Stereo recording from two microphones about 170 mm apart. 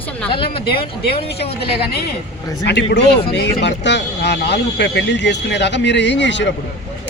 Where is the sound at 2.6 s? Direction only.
90° left.